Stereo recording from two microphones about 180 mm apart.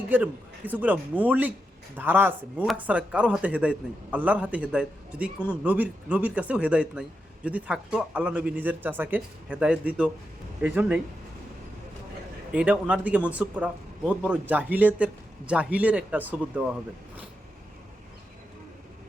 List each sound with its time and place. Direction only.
0.1 s a man's voice: 10° right (ahead or behind)
12.5 s a man's voice: 5° right (ahead or behind)